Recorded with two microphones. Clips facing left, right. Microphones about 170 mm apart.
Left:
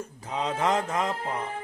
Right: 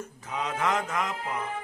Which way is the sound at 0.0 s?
30° left (ahead or behind).